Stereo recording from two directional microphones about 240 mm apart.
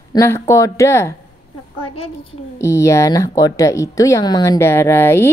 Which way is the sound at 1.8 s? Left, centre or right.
Left.